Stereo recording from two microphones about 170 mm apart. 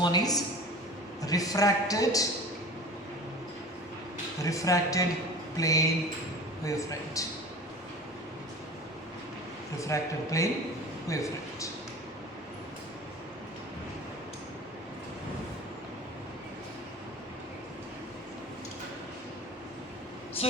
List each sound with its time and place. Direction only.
0.0 s a man's voice: 25° left (ahead or behind)
4.4 s a man's voice: 20° left (ahead or behind)
9.8 s a man's voice: 20° left (ahead or behind)
20.4 s a sound: 35° left (ahead or behind)